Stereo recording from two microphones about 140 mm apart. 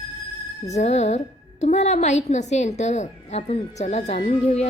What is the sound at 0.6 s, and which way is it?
A woman's voice, 55° left (ahead or behind).